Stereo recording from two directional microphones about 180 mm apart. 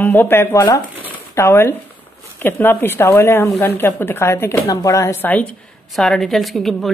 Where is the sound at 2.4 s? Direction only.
10° left (ahead or behind).